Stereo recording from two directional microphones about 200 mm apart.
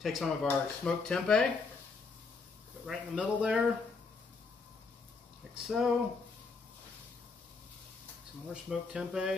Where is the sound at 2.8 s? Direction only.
5° right (ahead or behind).